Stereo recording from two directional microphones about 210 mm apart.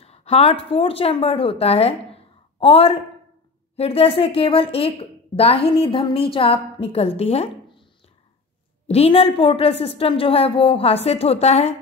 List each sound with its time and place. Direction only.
0.0 s a woman's voice: 30° left (ahead or behind)
8.8 s a woman's voice: 30° left (ahead or behind)